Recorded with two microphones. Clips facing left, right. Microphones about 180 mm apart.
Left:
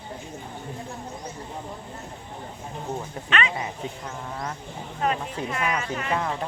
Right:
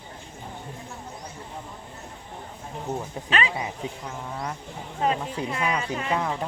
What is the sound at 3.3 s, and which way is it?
Speech, 35° right (ahead or behind).